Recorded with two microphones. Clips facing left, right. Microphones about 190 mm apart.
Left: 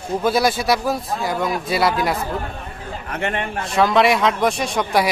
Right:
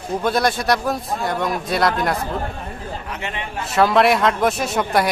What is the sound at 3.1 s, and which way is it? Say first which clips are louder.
Speech: left 9 dB; 55° left (ahead or behind).